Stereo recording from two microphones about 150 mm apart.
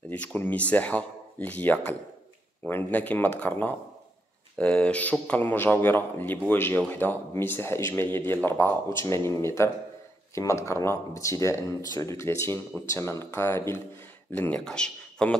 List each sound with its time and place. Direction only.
0.1 s speech: 10° left (ahead or behind)